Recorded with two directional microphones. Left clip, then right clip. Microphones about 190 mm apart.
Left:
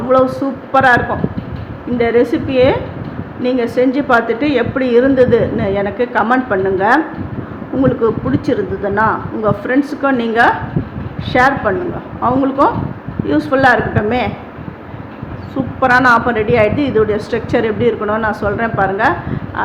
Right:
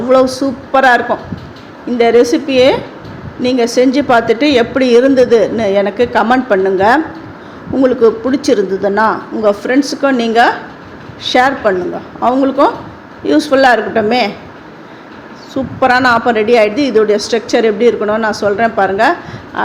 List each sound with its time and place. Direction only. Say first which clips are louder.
0.7 s a woman's voice: right 2 dB; 30° right (ahead or behind)
15.8 s a woman's voice: right 1 dB; 25° right (ahead or behind)